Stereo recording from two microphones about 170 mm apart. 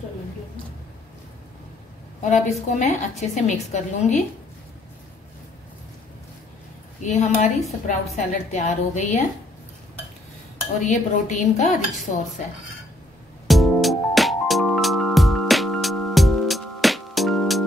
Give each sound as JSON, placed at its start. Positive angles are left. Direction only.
{"t": 2.2, "sound": "a woman's voice", "side_deg": 45}
{"t": 7.0, "sound": "a woman's voice", "side_deg": 45}
{"t": 10.9, "sound": "a woman's voice", "side_deg": 45}
{"t": 13.5, "sound": "music", "side_deg": 0}